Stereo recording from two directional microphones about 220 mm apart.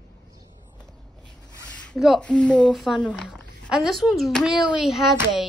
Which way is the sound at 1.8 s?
Centre (ahead or behind).